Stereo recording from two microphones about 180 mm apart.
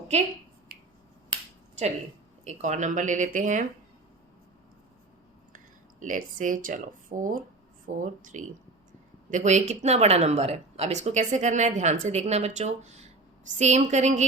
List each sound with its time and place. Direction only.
2.4 s speech: 40° right (ahead or behind)
5.5 s speech: 45° right (ahead or behind)